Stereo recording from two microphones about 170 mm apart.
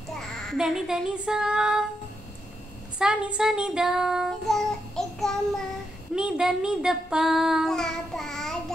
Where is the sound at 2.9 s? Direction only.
5° right (ahead or behind).